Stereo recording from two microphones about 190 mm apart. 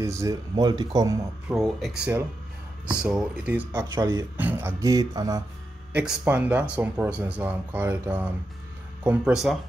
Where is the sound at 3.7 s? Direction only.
15° right (ahead or behind).